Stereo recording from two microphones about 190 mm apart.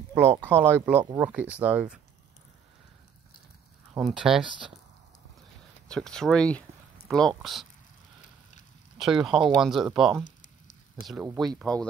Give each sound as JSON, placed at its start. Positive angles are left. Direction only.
{"t": 0.1, "sound": "speech", "side_deg": -10}
{"t": 3.9, "sound": "speech", "side_deg": -5}
{"t": 5.9, "sound": "speech", "side_deg": 5}
{"t": 8.9, "sound": "speech", "side_deg": 0}
{"t": 11.0, "sound": "speech", "side_deg": 45}
{"t": 11.3, "sound": "speech", "side_deg": 0}